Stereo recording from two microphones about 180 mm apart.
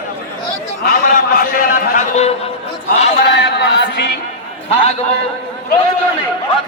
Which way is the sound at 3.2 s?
70° left (ahead or behind).